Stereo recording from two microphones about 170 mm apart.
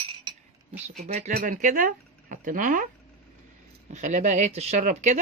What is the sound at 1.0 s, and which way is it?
Speech, 40° right (ahead or behind).